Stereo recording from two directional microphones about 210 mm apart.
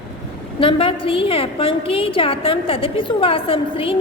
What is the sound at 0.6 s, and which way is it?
A woman's voice, 25° left (ahead or behind).